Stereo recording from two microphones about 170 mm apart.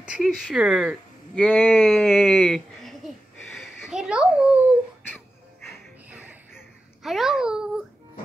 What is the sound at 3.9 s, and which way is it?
Speech, 5° right (ahead or behind).